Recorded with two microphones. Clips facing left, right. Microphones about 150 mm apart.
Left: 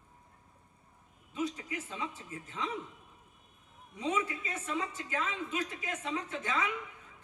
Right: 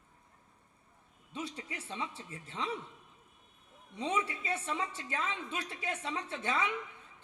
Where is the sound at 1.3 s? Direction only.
30° right (ahead or behind).